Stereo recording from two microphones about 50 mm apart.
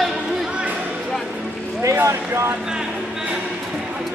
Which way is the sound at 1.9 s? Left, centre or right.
Right.